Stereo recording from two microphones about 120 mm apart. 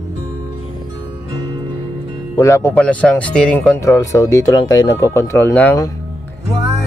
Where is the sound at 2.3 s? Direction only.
25° left (ahead or behind).